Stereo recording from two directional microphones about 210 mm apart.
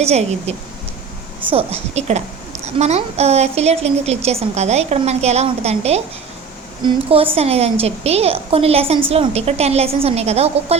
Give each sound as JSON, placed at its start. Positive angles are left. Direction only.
{"t": 0.0, "sound": "a woman's voice", "side_deg": -30}